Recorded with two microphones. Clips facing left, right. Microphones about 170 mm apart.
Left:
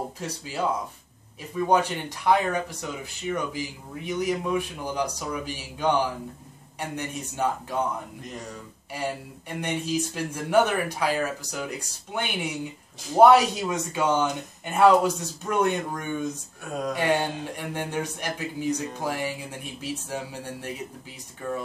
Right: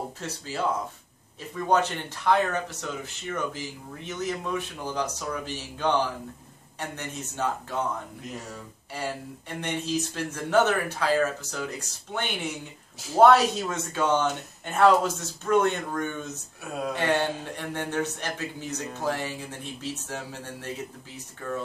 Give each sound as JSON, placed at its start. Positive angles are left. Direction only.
{"t": 0.2, "sound": "speech", "side_deg": 15}
{"t": 8.9, "sound": "speech", "side_deg": 15}